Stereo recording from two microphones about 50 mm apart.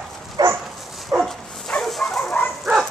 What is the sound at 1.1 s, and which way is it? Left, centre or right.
Dog, right.